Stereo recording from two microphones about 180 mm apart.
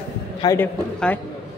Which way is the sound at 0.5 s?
10° left (ahead or behind).